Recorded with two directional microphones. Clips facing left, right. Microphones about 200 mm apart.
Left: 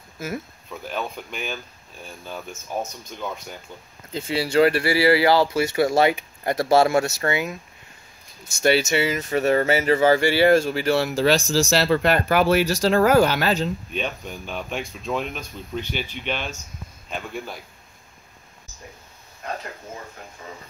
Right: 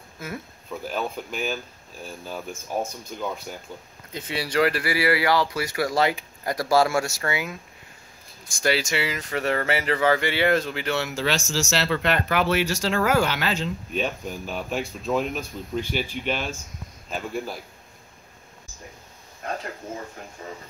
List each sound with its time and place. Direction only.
0.8 s speech: 5° right (ahead or behind)
4.1 s speech: 30° left (ahead or behind)
8.5 s speech: 25° left (ahead or behind); by 13.7 s 40° left (ahead or behind)
13.9 s speech: 5° right (ahead or behind)